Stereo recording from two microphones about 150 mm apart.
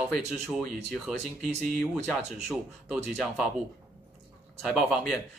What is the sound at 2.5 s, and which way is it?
Speech, 5° right (ahead or behind).